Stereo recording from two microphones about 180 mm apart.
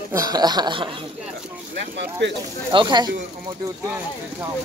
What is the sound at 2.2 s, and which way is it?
Speech, 75° right (ahead or behind).